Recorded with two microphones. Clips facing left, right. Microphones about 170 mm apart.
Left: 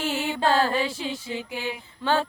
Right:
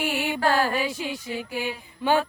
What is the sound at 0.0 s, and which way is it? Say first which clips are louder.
Music: right 1 dB; 15° right (ahead or behind).